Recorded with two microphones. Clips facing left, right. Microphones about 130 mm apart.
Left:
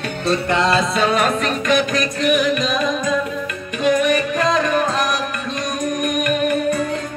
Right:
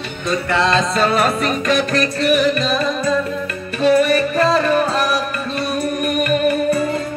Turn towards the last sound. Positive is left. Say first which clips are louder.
# right 2 dB
turn(degrees=-5)  # may be behind; listen again after turning